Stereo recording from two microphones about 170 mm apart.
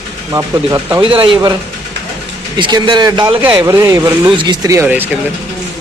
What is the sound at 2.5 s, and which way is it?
Speech, 30° right (ahead or behind).